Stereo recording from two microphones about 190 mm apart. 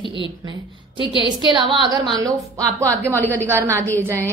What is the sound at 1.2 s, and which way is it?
A woman's voice, 25° right (ahead or behind).